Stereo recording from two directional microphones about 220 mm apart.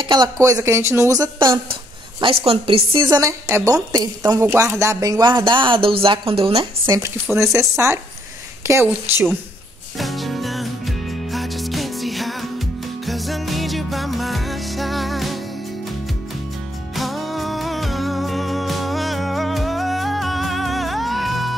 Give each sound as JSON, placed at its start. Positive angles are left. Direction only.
{"t": 0.0, "sound": "speech", "side_deg": -20}
{"t": 9.9, "sound": "music", "side_deg": 0}
{"t": 16.9, "sound": "music", "side_deg": 0}